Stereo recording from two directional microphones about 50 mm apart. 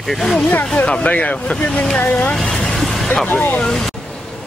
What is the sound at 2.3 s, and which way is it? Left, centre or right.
Vehicle, centre.